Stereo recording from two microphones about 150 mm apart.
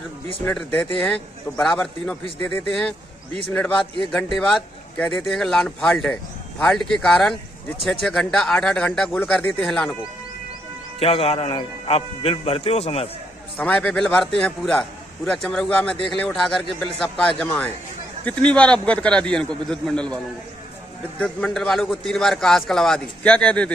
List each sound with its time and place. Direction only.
0.5 s a man's voice: 10° left (ahead or behind)
11.0 s a man's voice: 40° left (ahead or behind)
13.6 s a man's voice: 10° left (ahead or behind)
21.2 s a man's voice: 5° left (ahead or behind)